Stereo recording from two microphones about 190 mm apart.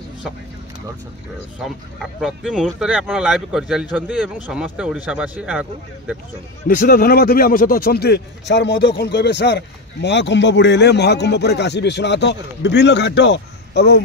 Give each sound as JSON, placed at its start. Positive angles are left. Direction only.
{"t": 1.6, "sound": "speech", "side_deg": 0}
{"t": 6.7, "sound": "a man's voice", "side_deg": 50}